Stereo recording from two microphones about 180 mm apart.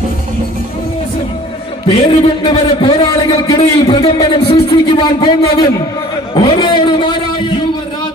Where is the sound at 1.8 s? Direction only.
25° left (ahead or behind).